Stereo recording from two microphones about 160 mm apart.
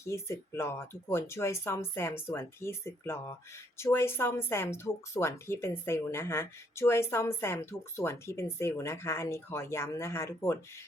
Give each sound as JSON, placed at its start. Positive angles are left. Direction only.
{"t": 0.1, "sound": "speech", "side_deg": 15}